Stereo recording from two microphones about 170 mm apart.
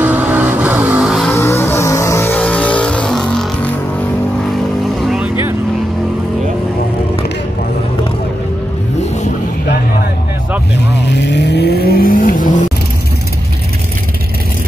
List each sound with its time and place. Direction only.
0.0 s vehicle: 10° right (ahead or behind)
1.3 s vehicle: 15° left (ahead or behind)
5.0 s vehicle: 5° right (ahead or behind)
10.9 s vehicle: 90° left; by 12.4 s 55° left (ahead or behind)